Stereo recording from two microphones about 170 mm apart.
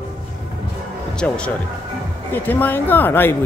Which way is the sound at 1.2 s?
5° left (ahead or behind).